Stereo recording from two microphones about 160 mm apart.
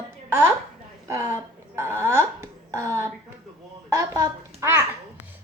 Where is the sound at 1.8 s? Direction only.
15° right (ahead or behind).